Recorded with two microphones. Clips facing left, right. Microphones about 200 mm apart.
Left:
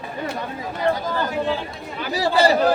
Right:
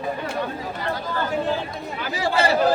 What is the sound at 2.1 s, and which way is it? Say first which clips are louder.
Speech: left 4 dB; 35° left (ahead or behind).